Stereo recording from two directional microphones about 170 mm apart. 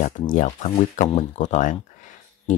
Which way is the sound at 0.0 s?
45° left (ahead or behind).